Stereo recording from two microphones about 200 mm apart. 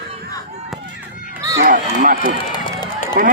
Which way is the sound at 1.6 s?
40° right (ahead or behind).